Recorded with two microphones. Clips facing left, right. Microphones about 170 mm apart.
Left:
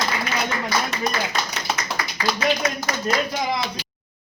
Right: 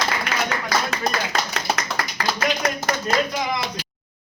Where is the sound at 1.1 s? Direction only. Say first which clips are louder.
Right 1 dB; 75° right (ahead or behind).